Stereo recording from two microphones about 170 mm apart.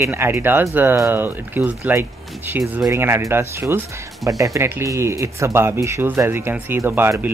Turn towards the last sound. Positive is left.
turn(degrees=-10)  # may be behind; listen again after turning